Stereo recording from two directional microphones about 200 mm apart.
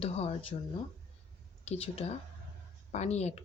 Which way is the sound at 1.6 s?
30° left (ahead or behind).